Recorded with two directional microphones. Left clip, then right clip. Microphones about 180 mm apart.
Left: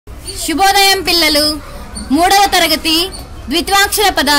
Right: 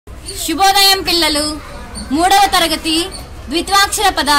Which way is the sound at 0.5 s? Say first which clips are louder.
Left 1 dB; 55° left (ahead or behind).